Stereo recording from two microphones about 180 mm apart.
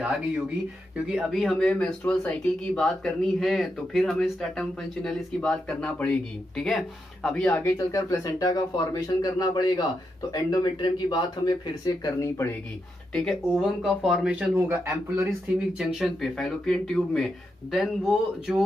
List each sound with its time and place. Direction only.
0.9 s speech: 5° right (ahead or behind); by 12.4 s 20° left (ahead or behind)
13.1 s speech: centre (ahead or behind)
15.8 s speech: centre (ahead or behind)